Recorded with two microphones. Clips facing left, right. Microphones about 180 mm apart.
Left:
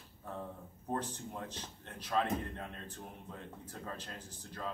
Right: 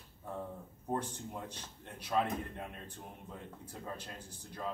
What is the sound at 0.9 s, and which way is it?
Speech, 10° right (ahead or behind).